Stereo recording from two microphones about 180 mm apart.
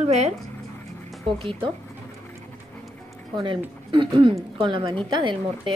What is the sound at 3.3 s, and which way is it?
A woman's voice, 30° right (ahead or behind).